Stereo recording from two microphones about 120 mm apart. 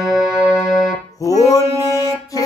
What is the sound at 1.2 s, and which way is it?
Music, 30° left (ahead or behind).